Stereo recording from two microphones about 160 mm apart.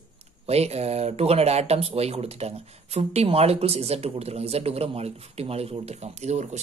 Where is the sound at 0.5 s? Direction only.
40° right (ahead or behind).